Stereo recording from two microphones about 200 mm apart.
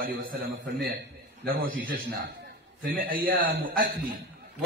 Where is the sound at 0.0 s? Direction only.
45° right (ahead or behind).